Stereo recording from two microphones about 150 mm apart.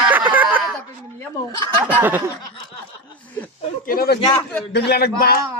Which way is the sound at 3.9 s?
85° left.